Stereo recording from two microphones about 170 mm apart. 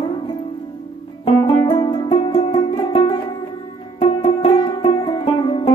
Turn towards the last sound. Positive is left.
turn(degrees=30)  # may be behind; listen again after turning